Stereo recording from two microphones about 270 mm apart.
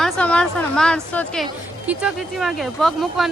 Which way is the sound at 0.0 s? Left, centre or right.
Centre.